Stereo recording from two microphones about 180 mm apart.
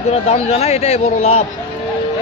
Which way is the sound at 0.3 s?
35° left (ahead or behind).